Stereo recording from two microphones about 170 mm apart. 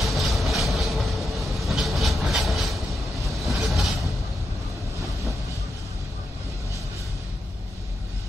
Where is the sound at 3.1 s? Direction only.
Centre (ahead or behind).